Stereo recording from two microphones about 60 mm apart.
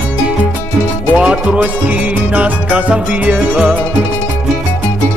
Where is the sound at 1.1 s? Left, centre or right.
Centre.